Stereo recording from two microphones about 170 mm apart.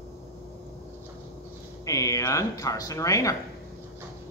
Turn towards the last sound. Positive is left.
turn(degrees=20)  # may be behind; listen again after turning